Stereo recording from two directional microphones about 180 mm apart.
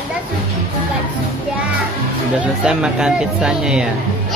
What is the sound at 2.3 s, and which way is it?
Speech, 5° right (ahead or behind).